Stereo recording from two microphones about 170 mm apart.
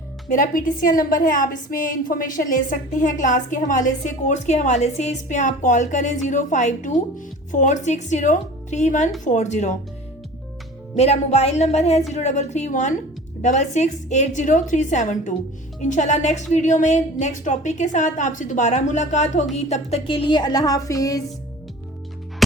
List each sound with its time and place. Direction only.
0.3 s a woman's voice: 50° left (ahead or behind)
10.9 s a woman's voice: 40° left (ahead or behind); by 21.2 s 20° left (ahead or behind)